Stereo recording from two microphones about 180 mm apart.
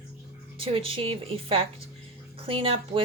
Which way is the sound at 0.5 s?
30° right (ahead or behind).